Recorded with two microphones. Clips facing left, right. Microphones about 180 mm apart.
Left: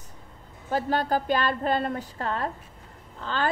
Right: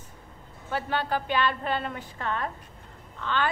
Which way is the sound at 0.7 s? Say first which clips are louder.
Left 4 dB; 40° left (ahead or behind).